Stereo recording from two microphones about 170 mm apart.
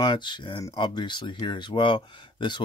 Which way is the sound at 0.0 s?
25° left (ahead or behind).